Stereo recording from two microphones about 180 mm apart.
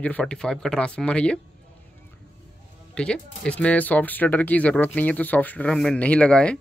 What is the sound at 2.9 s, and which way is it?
Speech, 5° left (ahead or behind).